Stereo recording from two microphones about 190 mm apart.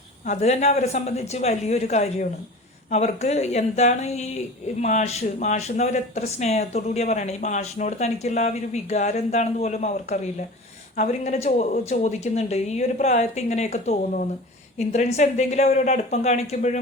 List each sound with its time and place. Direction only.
0.3 s speech: 35° left (ahead or behind)